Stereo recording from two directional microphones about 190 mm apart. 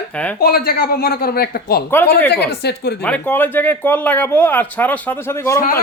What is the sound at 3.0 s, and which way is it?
Speech, 10° left (ahead or behind).